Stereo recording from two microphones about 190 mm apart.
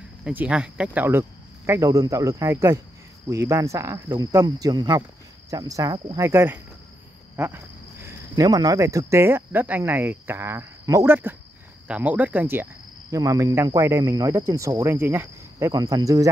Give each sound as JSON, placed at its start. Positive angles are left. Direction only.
{"t": 0.2, "sound": "speech", "side_deg": -5}